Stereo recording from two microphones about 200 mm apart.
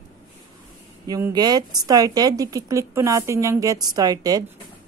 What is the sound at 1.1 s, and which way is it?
A woman's voice, 20° right (ahead or behind).